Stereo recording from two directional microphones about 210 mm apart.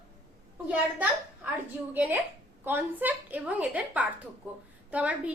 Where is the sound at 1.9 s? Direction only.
10° right (ahead or behind).